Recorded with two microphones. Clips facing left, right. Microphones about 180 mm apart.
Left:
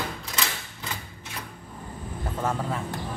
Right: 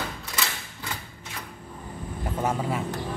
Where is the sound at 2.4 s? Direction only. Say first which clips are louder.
Right 2 dB; 10° right (ahead or behind).